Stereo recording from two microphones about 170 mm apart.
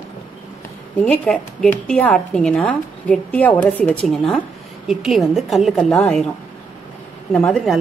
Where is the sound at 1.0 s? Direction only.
5° left (ahead or behind).